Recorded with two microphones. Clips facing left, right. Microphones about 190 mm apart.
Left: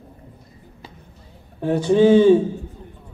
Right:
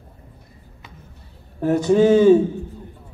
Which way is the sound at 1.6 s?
45° right (ahead or behind).